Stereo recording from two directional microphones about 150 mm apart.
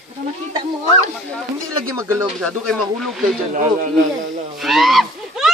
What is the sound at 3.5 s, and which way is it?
Speech, 55° right (ahead or behind).